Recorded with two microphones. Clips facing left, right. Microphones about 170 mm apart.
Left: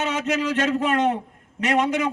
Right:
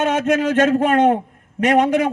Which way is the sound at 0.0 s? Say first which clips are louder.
Right 6 dB; 50° right (ahead or behind).